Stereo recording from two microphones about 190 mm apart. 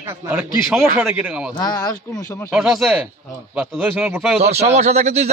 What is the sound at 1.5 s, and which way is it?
Speech, 20° left (ahead or behind).